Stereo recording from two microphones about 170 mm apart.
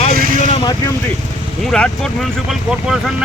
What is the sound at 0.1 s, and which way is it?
Vehicle, 55° right (ahead or behind).